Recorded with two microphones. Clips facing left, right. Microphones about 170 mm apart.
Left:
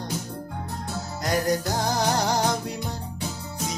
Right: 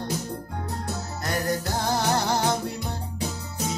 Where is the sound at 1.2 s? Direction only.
15° left (ahead or behind).